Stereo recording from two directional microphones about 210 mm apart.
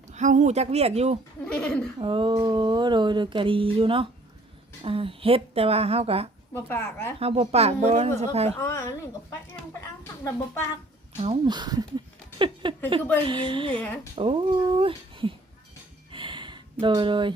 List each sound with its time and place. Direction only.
0.1 s speech: 35° right (ahead or behind)
1.5 s speech: 5° left (ahead or behind)
2.0 s a sound: 25° right (ahead or behind)
6.5 s speech: 10° left (ahead or behind)
7.2 s a sound: 30° right (ahead or behind)
8.2 s speech: 30° right (ahead or behind)
8.6 s speech: 15° left (ahead or behind)
10.0 s speech: 10° left (ahead or behind)
11.2 s speech: 25° right (ahead or behind)
12.9 s a sound: 25° right (ahead or behind)
13.8 s speech: 5° left (ahead or behind)
14.8 s speech: 25° right (ahead or behind)
16.1 s a sound: 25° right (ahead or behind)